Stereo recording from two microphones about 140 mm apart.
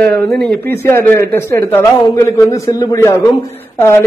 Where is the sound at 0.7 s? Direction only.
20° left (ahead or behind).